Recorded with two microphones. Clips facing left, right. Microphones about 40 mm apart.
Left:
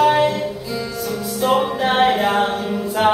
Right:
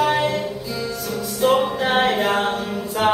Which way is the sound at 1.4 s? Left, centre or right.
Centre.